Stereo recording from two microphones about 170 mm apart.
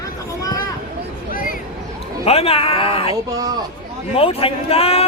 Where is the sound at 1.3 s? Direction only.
55° left (ahead or behind).